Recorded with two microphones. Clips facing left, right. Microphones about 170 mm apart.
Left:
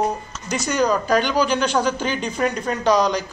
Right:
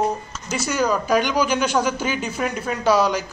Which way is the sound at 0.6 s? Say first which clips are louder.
Left 1 dB; 5° right (ahead or behind).